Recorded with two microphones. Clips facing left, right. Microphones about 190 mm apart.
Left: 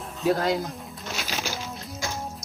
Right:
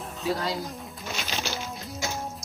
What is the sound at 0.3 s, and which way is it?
Speech, 55° left (ahead or behind).